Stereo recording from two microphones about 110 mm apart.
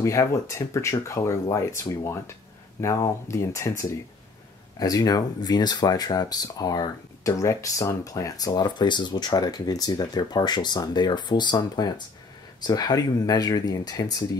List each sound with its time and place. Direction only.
0.0 s speech: 25° left (ahead or behind)